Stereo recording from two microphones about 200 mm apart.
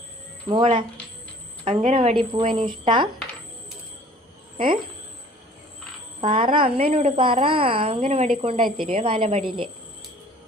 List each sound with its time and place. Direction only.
0.4 s a woman's voice: 25° right (ahead or behind)
4.5 s a woman's voice: 25° right (ahead or behind)
6.2 s a woman's voice: 25° right (ahead or behind)